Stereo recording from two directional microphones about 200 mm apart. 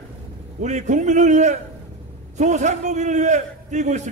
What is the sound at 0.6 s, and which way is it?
A man's voice, 35° right (ahead or behind).